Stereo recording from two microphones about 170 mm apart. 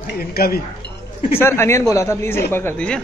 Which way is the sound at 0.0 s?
65° left (ahead or behind).